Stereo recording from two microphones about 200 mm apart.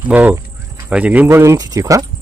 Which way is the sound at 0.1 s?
10° right (ahead or behind).